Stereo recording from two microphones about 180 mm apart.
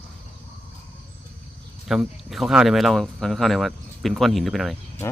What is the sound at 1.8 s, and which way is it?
Speech, centre (ahead or behind).